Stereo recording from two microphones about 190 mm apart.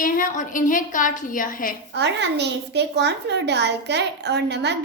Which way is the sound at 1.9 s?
65° right (ahead or behind).